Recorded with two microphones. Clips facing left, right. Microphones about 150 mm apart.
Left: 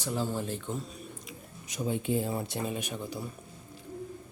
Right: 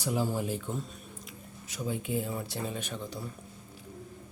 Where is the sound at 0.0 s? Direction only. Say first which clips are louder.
Right 2 dB; 10° right (ahead or behind).